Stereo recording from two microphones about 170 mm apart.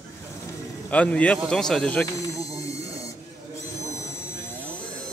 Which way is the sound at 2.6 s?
20° left (ahead or behind).